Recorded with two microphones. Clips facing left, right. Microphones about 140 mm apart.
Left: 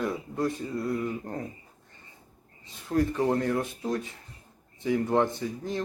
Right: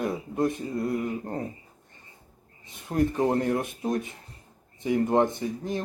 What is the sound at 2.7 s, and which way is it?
Speech, 20° right (ahead or behind).